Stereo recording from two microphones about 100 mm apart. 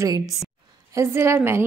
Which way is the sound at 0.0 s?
35° right (ahead or behind).